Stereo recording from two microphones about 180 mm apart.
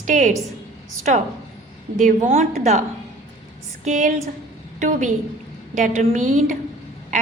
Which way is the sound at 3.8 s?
45° right (ahead or behind).